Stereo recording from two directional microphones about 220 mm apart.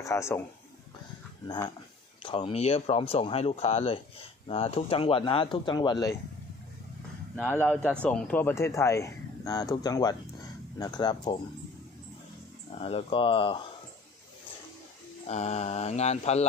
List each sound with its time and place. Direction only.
0.0 s a man's voice: 15° left (ahead or behind)
2.2 s speech: 25° left (ahead or behind)
7.3 s speech: 5° left (ahead or behind)
12.7 s speech: 25° left (ahead or behind)
15.2 s speech: 30° left (ahead or behind)